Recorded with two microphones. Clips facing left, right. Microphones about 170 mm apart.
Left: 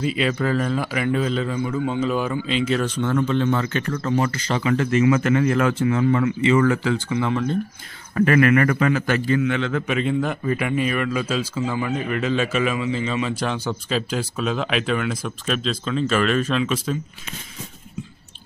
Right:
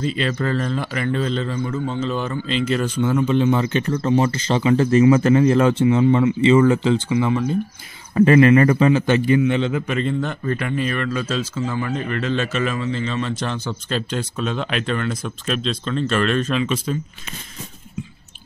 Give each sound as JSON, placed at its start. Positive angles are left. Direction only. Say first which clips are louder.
{"t": 0.0, "sound": "a man's voice", "louder": "even", "side_deg": 5}
{"t": 7.2, "sound": "a man's voice", "louder": "right 3 dB", "side_deg": -10}
{"t": 8.1, "sound": "a man's voice", "louder": "right 4 dB", "side_deg": -25}
{"t": 9.8, "sound": "a man's voice", "louder": "left 1 dB", "side_deg": 5}